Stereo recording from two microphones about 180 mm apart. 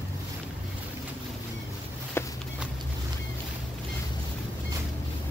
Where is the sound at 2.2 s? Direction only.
15° left (ahead or behind).